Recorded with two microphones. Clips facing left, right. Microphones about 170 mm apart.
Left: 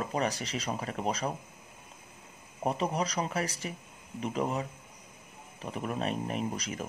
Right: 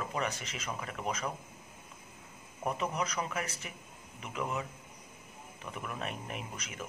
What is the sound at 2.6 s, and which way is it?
Speech, 30° left (ahead or behind).